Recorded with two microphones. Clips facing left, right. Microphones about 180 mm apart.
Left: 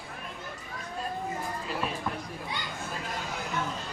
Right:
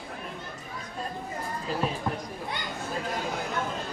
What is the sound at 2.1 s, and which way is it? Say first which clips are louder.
Children playing: right 3 dB; 30° right (ahead or behind).